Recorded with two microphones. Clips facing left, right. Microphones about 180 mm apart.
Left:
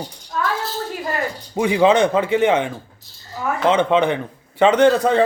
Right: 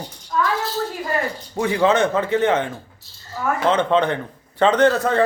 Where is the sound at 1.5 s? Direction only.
15° left (ahead or behind).